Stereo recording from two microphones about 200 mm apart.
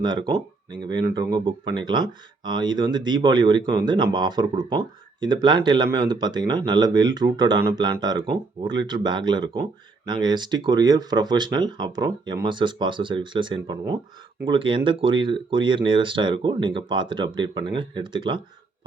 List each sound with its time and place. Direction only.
0.3 s speech: 20° right (ahead or behind)